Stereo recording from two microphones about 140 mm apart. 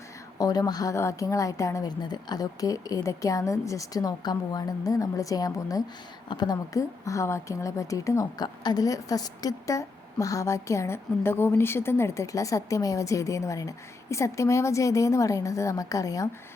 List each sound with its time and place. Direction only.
0.3 s speech: 25° left (ahead or behind)